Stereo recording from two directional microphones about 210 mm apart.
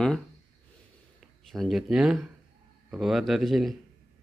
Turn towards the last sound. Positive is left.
turn(degrees=0)  # may be behind; listen again after turning